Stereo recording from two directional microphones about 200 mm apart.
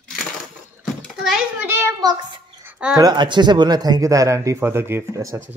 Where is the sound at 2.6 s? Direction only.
5° right (ahead or behind).